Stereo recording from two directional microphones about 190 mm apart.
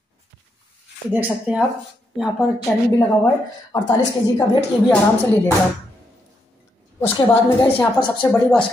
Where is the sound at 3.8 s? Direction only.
20° left (ahead or behind).